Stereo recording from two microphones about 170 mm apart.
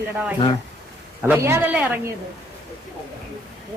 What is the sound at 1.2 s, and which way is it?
Speech, 10° right (ahead or behind).